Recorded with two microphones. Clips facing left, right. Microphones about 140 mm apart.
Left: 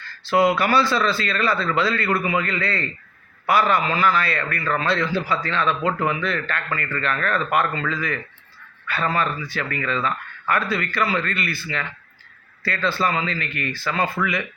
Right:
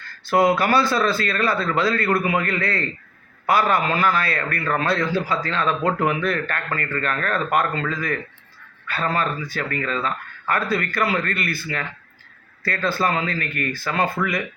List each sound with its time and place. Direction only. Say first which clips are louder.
0.3 s speech: right 1 dB; 50° right (ahead or behind)